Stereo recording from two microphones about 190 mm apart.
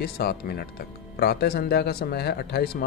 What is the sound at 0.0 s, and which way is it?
Speech, 55° left (ahead or behind).